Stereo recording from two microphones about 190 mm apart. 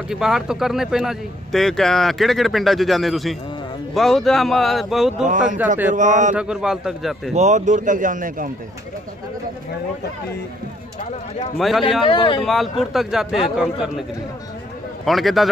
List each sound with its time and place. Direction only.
0.1 s speech: 5° right (ahead or behind)
5.9 s mantra: 40° right (ahead or behind)
6.3 s speech: 5° right (ahead or behind)
7.3 s speech: 40° right (ahead or behind)
11.5 s speech: centre (ahead or behind)
12.0 s speech: 25° left (ahead or behind)
12.4 s speech: centre (ahead or behind)
15.0 s speech: centre (ahead or behind)